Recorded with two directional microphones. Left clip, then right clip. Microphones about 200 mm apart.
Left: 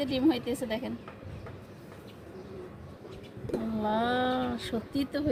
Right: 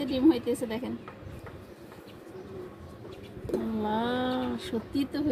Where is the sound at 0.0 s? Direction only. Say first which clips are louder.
Right 3 dB; 45° left (ahead or behind).